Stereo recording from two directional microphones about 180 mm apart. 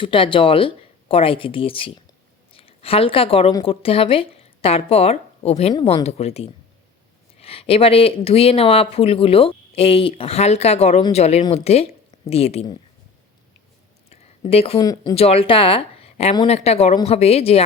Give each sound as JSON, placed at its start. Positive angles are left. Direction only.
{"t": 0.0, "sound": "a woman's voice", "side_deg": 30}
{"t": 14.1, "sound": "a sound", "side_deg": 35}
{"t": 14.8, "sound": "speech", "side_deg": 20}
{"t": 15.1, "sound": "a woman's voice", "side_deg": 35}